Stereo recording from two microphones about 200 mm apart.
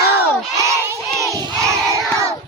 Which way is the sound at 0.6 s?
15° right (ahead or behind).